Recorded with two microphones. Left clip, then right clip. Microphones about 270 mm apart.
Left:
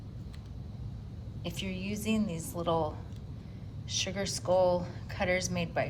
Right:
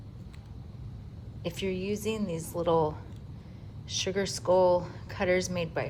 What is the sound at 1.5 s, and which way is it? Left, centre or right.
A woman's voice, right.